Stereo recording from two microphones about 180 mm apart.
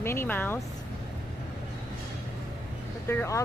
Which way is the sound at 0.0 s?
15° left (ahead or behind).